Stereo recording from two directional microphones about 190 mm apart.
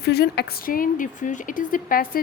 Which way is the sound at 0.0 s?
60° left (ahead or behind).